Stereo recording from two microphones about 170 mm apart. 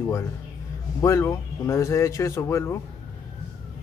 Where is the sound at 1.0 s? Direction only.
15° left (ahead or behind).